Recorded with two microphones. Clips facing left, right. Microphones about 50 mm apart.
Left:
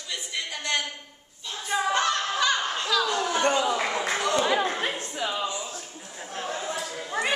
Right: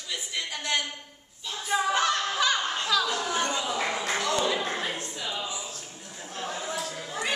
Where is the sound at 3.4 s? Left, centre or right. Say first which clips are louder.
Left 6 dB; left.